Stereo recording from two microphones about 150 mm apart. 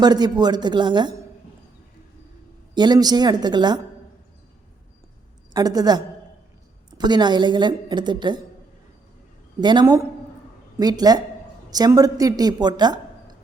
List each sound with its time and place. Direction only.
0.0 s speech: 25° right (ahead or behind)
2.7 s speech: 30° right (ahead or behind)
5.5 s speech: 25° right (ahead or behind)
7.0 s a woman's voice: 30° right (ahead or behind)
9.6 s a woman's voice: 30° right (ahead or behind)
9.8 s a woman's voice: 20° right (ahead or behind)